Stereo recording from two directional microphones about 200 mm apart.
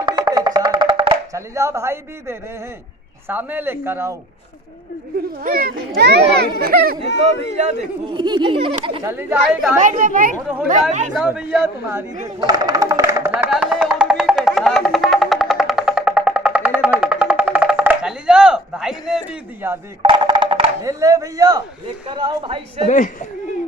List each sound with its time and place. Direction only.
0.0 s music: 20° right (ahead or behind)
3.3 s speech: 10° right (ahead or behind)
5.4 s a child's voice: 45° right (ahead or behind)
7.1 s speech: 60° left (ahead or behind)
8.1 s a man's voice: 25° right (ahead or behind)
9.0 s speech: 10° right (ahead or behind)
9.8 s speech: 40° right (ahead or behind)
10.4 s speech: 5° right (ahead or behind)
10.9 s speech: 35° right (ahead or behind)
11.1 s speech: 5° right (ahead or behind)
12.4 s music: 20° right (ahead or behind)
20.0 s music: 25° right (ahead or behind)
20.8 s a man's voice: 15° right (ahead or behind)
22.8 s speech: 40° left (ahead or behind)